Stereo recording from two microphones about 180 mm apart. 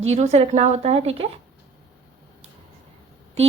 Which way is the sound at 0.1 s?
35° right (ahead or behind).